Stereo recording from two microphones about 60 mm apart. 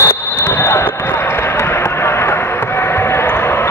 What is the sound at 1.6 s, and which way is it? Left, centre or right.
Music, left.